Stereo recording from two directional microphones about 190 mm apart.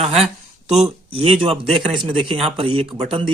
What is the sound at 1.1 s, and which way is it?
Speech, 30° right (ahead or behind).